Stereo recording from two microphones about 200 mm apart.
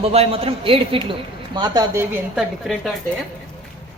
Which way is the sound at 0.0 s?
30° right (ahead or behind).